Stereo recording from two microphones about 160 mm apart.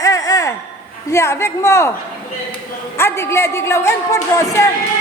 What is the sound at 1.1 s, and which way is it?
Speech, 15° left (ahead or behind).